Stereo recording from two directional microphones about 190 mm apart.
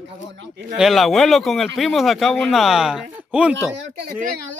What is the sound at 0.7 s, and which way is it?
Speech, centre (ahead or behind).